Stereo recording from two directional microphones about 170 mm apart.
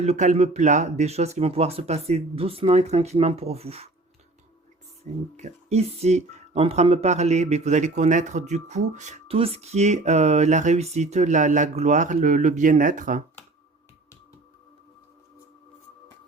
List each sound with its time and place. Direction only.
0.0 s speech: 45° right (ahead or behind)
5.1 s speech: 45° right (ahead or behind)